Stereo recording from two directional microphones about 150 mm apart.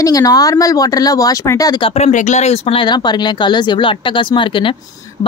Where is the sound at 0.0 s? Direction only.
25° left (ahead or behind).